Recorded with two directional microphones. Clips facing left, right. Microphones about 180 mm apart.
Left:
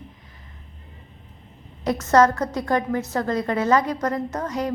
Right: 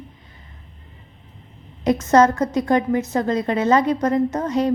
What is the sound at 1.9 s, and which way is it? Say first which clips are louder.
A woman's voice: right 2 dB; 20° right (ahead or behind).